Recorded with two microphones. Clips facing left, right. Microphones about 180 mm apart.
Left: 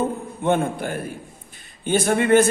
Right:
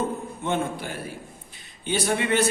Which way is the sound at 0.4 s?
55° left (ahead or behind).